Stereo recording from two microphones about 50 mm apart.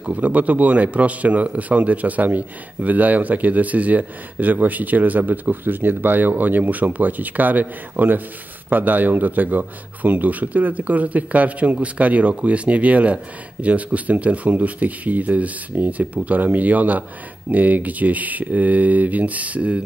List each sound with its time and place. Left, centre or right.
0.0 s speech: right